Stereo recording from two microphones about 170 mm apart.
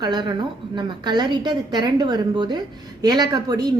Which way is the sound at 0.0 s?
25° right (ahead or behind).